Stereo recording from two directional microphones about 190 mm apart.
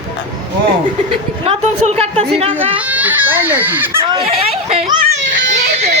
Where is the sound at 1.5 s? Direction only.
30° right (ahead or behind).